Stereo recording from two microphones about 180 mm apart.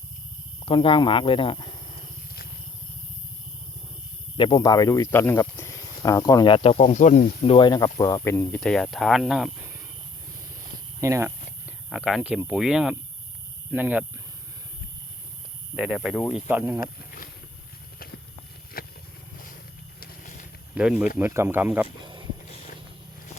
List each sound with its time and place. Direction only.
0.6 s speech: 30° left (ahead or behind)
4.4 s speech: 25° left (ahead or behind); by 7.5 s 45° left (ahead or behind)
7.5 s speech: 25° left (ahead or behind); by 9.7 s centre (ahead or behind)
11.0 s speech: 15° right (ahead or behind)
11.9 s speech: centre (ahead or behind)
15.7 s speech: centre (ahead or behind)
16.8 s a sound: 50° left (ahead or behind)
18.8 s vehicle: 55° left (ahead or behind)
20.0 s vehicle: 50° left (ahead or behind)
20.7 s speech: 5° right (ahead or behind)
22.0 s a sound: 25° right (ahead or behind)